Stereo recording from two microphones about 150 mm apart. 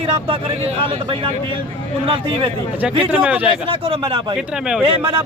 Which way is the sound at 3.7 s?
35° right (ahead or behind).